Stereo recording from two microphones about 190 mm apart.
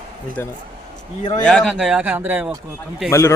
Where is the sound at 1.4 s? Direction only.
5° left (ahead or behind).